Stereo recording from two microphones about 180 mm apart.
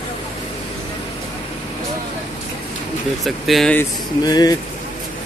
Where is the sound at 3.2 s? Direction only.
Centre (ahead or behind).